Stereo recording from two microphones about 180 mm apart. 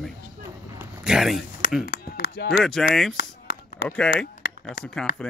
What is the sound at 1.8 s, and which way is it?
Speech, 55° left (ahead or behind).